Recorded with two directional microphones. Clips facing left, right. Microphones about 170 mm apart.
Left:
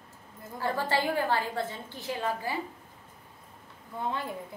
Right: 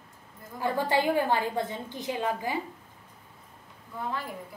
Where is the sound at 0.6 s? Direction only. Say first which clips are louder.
Right 3 dB; 15° right (ahead or behind).